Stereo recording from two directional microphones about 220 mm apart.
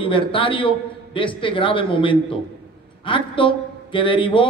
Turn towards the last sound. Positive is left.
turn(degrees=25)  # may be behind; listen again after turning